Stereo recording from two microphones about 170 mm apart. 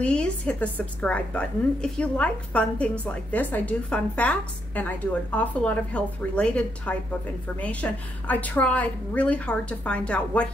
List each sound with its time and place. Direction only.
0.0 s a woman's voice: 5° left (ahead or behind)